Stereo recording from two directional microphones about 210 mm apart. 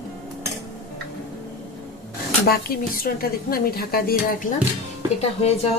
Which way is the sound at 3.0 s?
45° left (ahead or behind).